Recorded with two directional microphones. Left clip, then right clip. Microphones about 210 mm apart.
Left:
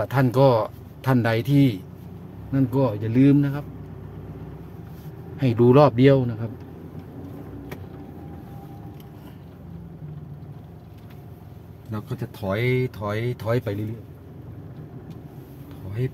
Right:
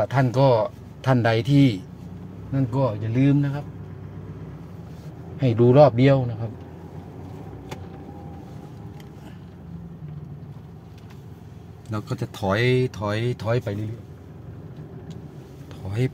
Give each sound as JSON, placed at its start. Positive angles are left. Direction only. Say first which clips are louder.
{"t": 0.0, "sound": "speech", "louder": "left 1 dB", "side_deg": 0}
{"t": 1.0, "sound": "speech", "louder": "right 2 dB", "side_deg": -10}
{"t": 2.5, "sound": "speech", "louder": "left 2 dB", "side_deg": 0}
{"t": 5.4, "sound": "speech", "louder": "right 1 dB", "side_deg": -5}
{"t": 11.9, "sound": "speech", "louder": "right 3 dB", "side_deg": -25}